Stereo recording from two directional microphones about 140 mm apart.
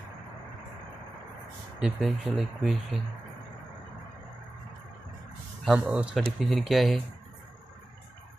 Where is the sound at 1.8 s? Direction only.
Centre (ahead or behind).